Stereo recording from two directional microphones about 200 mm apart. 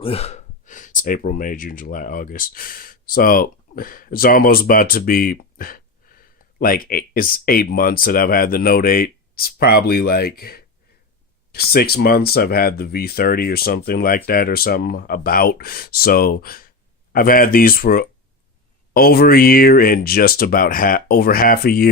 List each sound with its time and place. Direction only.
0.0 s speech: 30° left (ahead or behind); by 21.8 s 50° left (ahead or behind)